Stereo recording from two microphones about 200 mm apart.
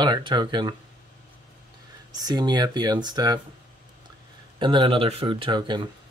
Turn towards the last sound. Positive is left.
turn(degrees=-25)  # may be behind; listen again after turning